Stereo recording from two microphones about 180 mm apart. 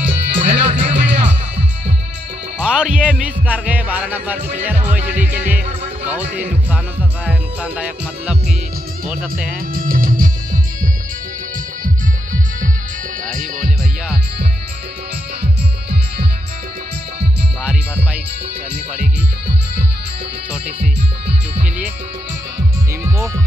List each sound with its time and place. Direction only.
0.1 s speech: 35° right (ahead or behind)
2.6 s speech: 5° right (ahead or behind)
7.2 s speech: 5° right (ahead or behind)
9.5 s music: 50° right (ahead or behind)
15.4 s music: 30° right (ahead or behind)
17.6 s music: 5° right (ahead or behind)
23.0 s music: 15° right (ahead or behind)